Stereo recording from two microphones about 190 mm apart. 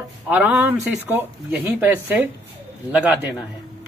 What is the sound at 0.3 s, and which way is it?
Speech, 5° right (ahead or behind).